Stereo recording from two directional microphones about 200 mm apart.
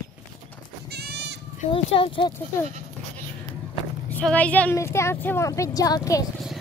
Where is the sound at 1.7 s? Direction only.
25° left (ahead or behind).